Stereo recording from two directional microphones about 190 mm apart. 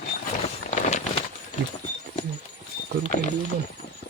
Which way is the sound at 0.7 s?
35° left (ahead or behind).